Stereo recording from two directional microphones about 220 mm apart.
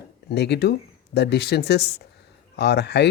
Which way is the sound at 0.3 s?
50° left (ahead or behind).